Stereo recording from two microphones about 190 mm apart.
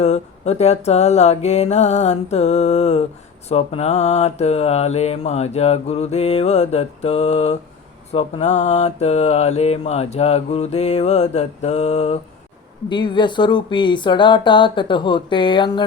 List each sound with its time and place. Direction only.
0.0 s mantra: 35° left (ahead or behind)
12.9 s speech: 25° left (ahead or behind)